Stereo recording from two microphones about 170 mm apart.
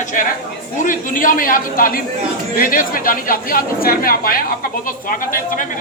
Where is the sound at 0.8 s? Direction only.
50° left (ahead or behind).